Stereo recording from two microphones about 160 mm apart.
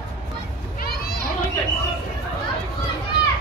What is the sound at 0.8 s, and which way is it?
Children playing, 75° left (ahead or behind).